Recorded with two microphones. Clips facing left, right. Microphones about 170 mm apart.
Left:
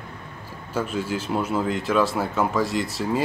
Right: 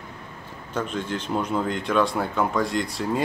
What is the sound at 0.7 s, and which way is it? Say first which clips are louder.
Speech: left 2 dB; 5° left (ahead or behind).